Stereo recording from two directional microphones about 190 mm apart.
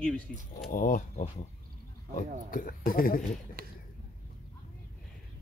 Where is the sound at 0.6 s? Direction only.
45° left (ahead or behind).